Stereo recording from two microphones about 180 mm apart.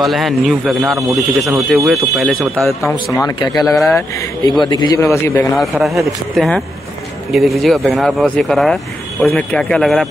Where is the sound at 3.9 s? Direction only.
15° left (ahead or behind).